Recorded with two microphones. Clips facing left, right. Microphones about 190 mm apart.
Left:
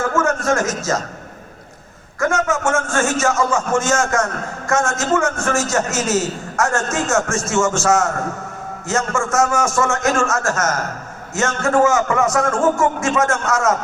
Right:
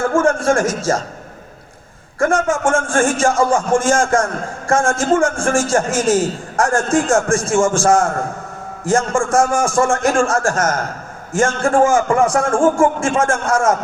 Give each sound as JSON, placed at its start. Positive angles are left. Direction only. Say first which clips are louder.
{"t": 0.0, "sound": "a man's voice", "louder": "right 4 dB", "side_deg": -30}
{"t": 2.1, "sound": "a man's voice", "louder": "right 3 dB", "side_deg": -30}